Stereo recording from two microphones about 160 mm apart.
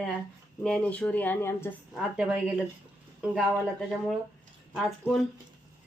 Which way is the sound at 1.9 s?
5° right (ahead or behind).